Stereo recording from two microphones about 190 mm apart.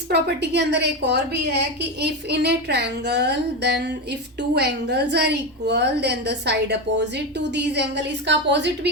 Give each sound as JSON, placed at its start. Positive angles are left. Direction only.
{"t": 0.1, "sound": "a woman's voice", "side_deg": -60}